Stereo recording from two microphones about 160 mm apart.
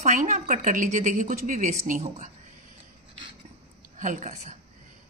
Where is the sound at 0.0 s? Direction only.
45° right (ahead or behind).